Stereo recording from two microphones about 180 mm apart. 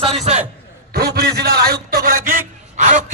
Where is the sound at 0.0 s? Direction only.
35° right (ahead or behind).